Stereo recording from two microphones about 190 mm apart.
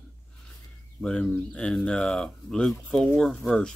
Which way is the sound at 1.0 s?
5° left (ahead or behind).